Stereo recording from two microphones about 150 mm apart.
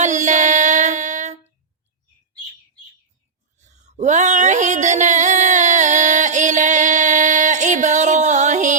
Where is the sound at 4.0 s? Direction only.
55° right (ahead or behind).